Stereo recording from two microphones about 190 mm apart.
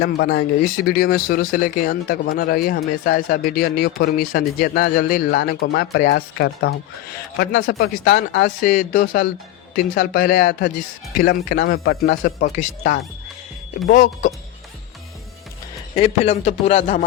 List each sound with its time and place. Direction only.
0.0 s speech: 60° left (ahead or behind)
16.0 s speech: 30° left (ahead or behind)